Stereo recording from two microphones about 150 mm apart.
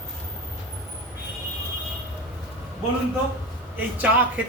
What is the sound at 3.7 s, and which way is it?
Speech, 10° right (ahead or behind).